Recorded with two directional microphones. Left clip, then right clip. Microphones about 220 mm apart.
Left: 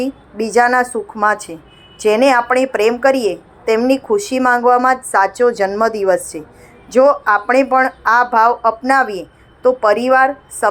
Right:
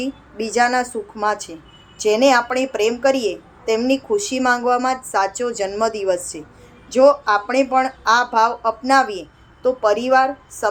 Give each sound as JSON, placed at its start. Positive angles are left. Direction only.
{"t": 0.0, "sound": "a woman's voice", "side_deg": 20}